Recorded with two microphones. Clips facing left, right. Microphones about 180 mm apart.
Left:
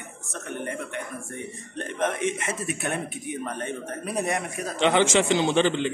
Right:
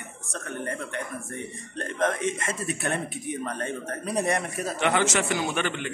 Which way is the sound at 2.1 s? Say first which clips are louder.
Left 1 dB; 10° left (ahead or behind).